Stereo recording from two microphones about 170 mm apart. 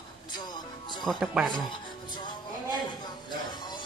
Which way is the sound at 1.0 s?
Centre (ahead or behind).